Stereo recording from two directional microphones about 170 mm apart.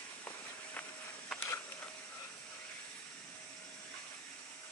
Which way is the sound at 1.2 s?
10° left (ahead or behind).